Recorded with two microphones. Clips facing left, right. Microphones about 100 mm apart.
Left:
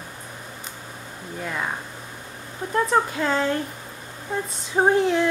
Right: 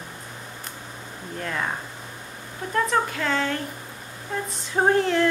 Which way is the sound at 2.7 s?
20° left (ahead or behind).